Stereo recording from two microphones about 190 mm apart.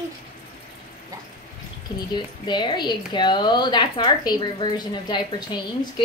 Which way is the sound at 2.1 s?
25° left (ahead or behind).